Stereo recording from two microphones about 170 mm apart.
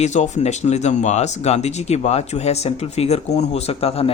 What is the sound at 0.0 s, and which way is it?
A man's voice, 45° left (ahead or behind).